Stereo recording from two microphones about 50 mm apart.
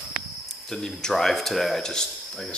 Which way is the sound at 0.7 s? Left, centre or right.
Centre.